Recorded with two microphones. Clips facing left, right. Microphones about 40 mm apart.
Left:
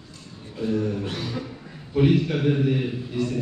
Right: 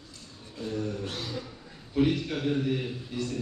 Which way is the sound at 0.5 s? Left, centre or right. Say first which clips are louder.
Left 8 dB; left.